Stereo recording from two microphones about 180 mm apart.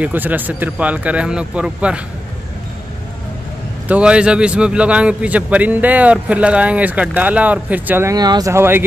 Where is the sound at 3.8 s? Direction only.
5° right (ahead or behind).